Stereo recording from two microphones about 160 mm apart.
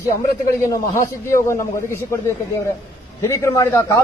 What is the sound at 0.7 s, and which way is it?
A man's voice, 20° left (ahead or behind).